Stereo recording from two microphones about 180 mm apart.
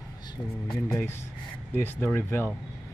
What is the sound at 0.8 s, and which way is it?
Speech, 10° left (ahead or behind).